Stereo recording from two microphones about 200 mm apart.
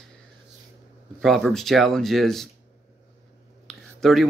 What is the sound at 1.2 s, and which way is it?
Speech, centre (ahead or behind).